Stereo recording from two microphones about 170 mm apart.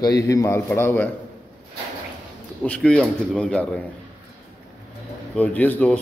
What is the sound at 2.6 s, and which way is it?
A man's voice, 5° left (ahead or behind).